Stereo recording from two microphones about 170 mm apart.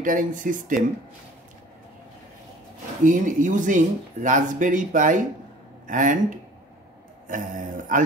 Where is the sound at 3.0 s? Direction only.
50° right (ahead or behind).